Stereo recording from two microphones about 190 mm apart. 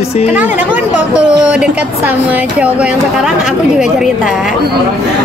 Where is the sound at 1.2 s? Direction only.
5° right (ahead or behind).